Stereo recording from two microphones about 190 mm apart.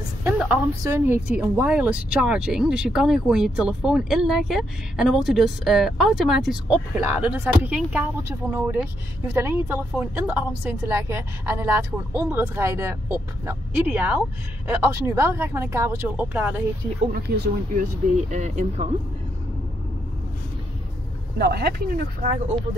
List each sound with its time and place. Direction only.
0.2 s a woman's voice: 10° right (ahead or behind)
9.3 s a woman's voice: 15° right (ahead or behind)
17.1 s speech: 55° right (ahead or behind)
18.1 s speech: 40° right (ahead or behind)
21.4 s speech: 55° right (ahead or behind)